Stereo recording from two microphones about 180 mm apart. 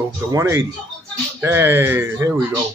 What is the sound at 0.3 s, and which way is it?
Speech, 15° right (ahead or behind).